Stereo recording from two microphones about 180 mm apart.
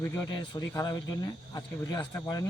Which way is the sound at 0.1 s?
20° left (ahead or behind).